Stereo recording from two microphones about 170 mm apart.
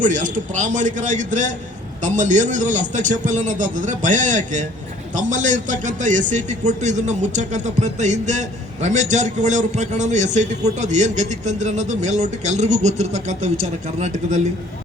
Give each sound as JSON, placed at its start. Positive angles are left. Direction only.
{"t": 0.0, "sound": "a man's voice", "side_deg": -50}